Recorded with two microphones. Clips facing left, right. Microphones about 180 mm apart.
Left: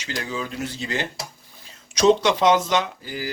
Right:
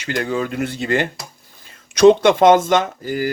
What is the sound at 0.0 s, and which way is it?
Speech, 55° right (ahead or behind).